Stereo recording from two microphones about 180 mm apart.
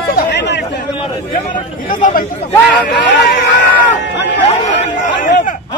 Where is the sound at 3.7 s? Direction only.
45° left (ahead or behind).